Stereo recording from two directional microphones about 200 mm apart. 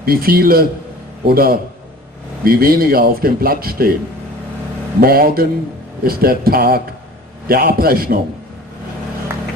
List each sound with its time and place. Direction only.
0.0 s a man's voice: 50° right (ahead or behind)
5.0 s a man's voice: 50° right (ahead or behind)